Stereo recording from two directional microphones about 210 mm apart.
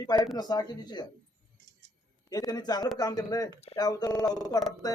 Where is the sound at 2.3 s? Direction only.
20° left (ahead or behind).